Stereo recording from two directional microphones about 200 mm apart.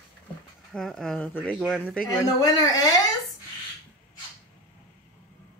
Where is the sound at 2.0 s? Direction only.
20° left (ahead or behind).